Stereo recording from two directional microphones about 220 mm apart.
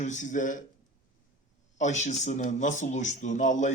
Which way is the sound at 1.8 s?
30° left (ahead or behind).